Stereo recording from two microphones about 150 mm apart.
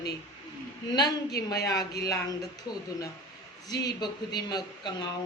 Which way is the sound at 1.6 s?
25° left (ahead or behind).